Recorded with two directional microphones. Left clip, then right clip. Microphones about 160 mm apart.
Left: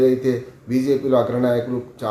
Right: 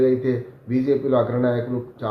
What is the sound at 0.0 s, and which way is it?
Speech, 15° left (ahead or behind).